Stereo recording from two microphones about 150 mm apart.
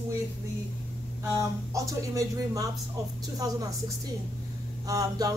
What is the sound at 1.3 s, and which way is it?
Speech, 20° right (ahead or behind).